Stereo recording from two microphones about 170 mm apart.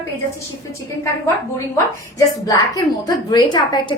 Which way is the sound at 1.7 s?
20° left (ahead or behind).